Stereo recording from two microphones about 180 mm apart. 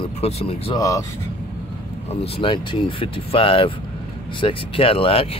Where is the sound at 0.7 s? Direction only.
20° left (ahead or behind).